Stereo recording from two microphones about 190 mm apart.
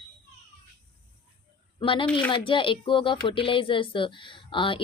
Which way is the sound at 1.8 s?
25° left (ahead or behind).